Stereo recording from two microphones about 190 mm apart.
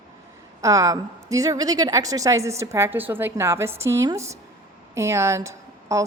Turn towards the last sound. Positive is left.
turn(degrees=-15)  # may be behind; listen again after turning